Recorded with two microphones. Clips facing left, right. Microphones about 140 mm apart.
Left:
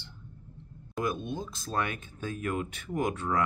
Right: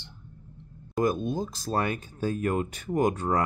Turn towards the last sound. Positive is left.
turn(degrees=-40)  # may be behind; listen again after turning